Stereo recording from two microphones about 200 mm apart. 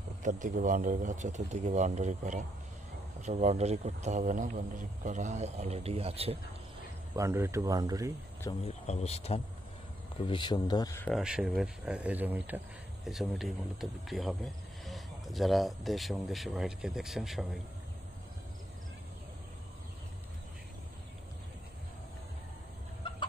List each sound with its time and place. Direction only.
0.2 s a man's voice: 40° right (ahead or behind)
7.2 s speech: 15° right (ahead or behind)
8.6 s a man's voice: 35° left (ahead or behind); by 11.1 s 15° left (ahead or behind)
11.1 s speech: centre (ahead or behind)
23.0 s chicken: 25° left (ahead or behind)